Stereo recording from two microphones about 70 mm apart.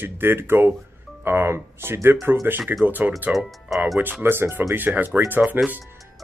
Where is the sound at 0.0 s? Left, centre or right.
Right.